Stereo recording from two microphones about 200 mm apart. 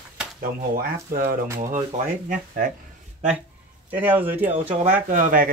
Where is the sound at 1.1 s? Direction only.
45° right (ahead or behind).